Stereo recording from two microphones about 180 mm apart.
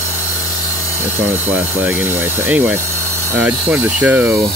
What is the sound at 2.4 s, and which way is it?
Ratchet, 5° right (ahead or behind).